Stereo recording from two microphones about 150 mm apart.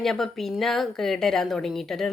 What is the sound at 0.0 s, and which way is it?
Speech, centre (ahead or behind).